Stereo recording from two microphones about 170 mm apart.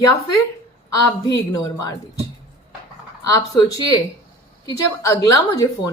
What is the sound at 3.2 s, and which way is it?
A woman's voice, 20° left (ahead or behind).